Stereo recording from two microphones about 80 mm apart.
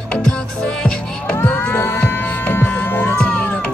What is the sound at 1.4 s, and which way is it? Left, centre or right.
Cattle, centre.